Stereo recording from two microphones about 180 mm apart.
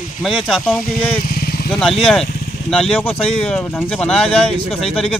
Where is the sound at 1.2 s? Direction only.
55° left (ahead or behind).